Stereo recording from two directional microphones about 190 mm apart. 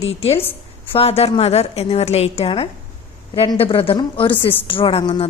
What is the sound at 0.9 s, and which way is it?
A woman's voice, 30° left (ahead or behind).